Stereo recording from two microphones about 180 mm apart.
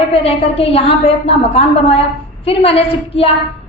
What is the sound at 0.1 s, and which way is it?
A woman's voice, 35° left (ahead or behind).